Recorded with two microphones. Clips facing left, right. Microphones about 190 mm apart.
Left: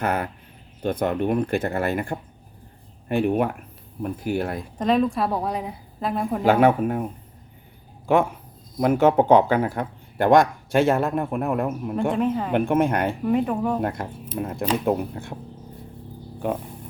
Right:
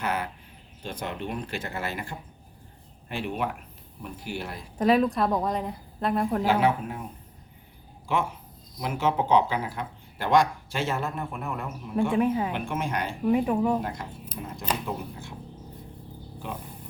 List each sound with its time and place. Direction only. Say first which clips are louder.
0.0 s speech: left 5 dB; 55° left (ahead or behind)
4.8 s a woman's voice: left 1 dB; 5° right (ahead or behind)
6.4 s speech: left 10 dB; 55° left (ahead or behind)
8.8 s speech: left 9 dB; 55° left (ahead or behind)
12.1 s speech: right 2 dB; 5° right (ahead or behind)
12.5 s speech: left 10 dB; 60° left (ahead or behind)
13.2 s a woman's voice: right 2 dB; 5° right (ahead or behind)
13.8 s speech: left 7 dB; 55° left (ahead or behind)